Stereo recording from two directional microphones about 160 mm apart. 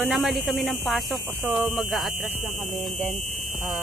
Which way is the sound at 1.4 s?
15° right (ahead or behind).